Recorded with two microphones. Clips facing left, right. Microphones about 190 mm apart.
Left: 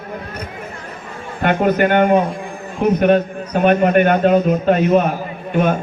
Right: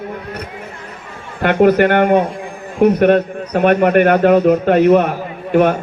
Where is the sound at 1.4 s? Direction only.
70° right (ahead or behind).